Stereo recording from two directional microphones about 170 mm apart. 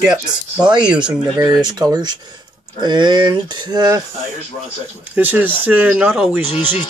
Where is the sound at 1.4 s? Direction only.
25° right (ahead or behind).